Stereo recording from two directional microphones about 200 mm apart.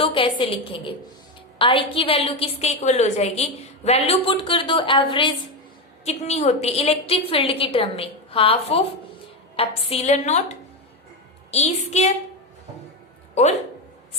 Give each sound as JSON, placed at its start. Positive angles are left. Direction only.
{"t": 0.0, "sound": "a woman's voice", "side_deg": 25}
{"t": 11.5, "sound": "a woman's voice", "side_deg": 35}
{"t": 13.4, "sound": "a woman's voice", "side_deg": 35}